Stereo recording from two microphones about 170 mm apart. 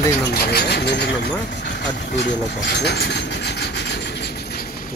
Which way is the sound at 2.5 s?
80° left.